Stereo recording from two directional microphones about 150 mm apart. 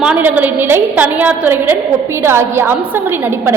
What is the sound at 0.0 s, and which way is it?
A woman's voice, 10° right (ahead or behind).